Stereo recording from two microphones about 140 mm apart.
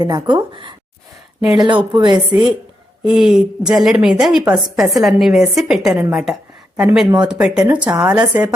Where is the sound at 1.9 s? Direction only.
30° right (ahead or behind).